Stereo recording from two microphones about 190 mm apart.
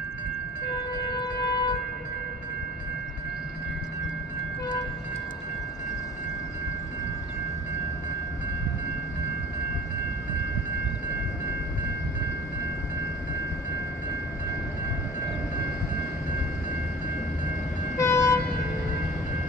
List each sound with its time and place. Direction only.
1.2 s shofar: 20° left (ahead or behind)
17.9 s vehicle: 15° left (ahead or behind)